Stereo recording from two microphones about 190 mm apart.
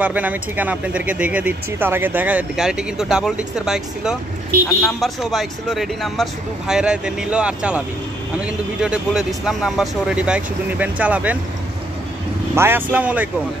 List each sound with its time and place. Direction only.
0.0 s speech: 10° right (ahead or behind)
12.5 s speech: 10° right (ahead or behind)